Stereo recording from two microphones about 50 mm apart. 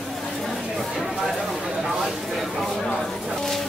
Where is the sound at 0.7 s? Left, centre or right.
Centre.